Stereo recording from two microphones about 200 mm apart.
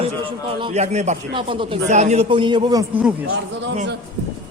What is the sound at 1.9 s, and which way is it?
A man's voice, 35° right (ahead or behind).